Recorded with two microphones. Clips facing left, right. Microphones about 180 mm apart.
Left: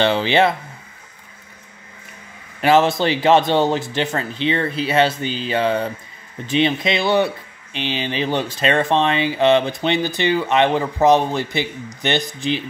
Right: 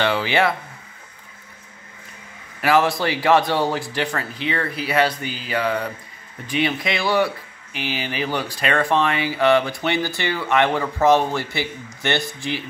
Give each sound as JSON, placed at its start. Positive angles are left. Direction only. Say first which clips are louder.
{"t": 0.0, "sound": "speech", "louder": "left 3 dB", "side_deg": 25}
{"t": 2.6, "sound": "speech", "louder": "left 3 dB", "side_deg": 25}